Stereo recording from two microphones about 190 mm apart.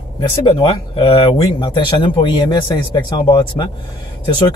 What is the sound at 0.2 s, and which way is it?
Speech, 25° left (ahead or behind).